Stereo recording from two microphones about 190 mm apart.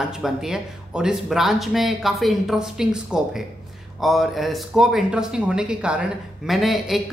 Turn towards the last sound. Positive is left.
turn(degrees=0)  # may be behind; listen again after turning